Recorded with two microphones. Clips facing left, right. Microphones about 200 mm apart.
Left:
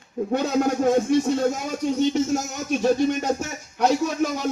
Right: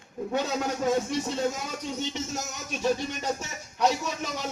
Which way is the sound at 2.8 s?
50° left (ahead or behind).